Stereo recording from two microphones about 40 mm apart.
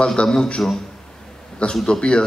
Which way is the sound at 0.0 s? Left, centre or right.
Left.